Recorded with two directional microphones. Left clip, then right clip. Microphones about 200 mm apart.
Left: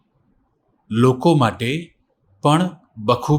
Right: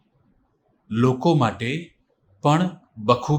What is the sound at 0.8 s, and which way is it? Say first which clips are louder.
Speech: left 4 dB; 15° left (ahead or behind).